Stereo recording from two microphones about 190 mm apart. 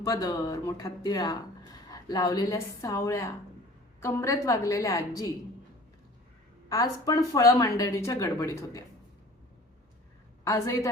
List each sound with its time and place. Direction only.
0.0 s speech: 20° left (ahead or behind)
6.7 s speech: 20° left (ahead or behind)
10.4 s speech: 15° left (ahead or behind)